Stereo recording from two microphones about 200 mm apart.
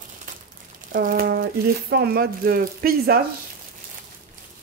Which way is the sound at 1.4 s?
60° right (ahead or behind).